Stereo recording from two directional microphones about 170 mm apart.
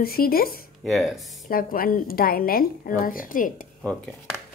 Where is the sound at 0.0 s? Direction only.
60° left (ahead or behind).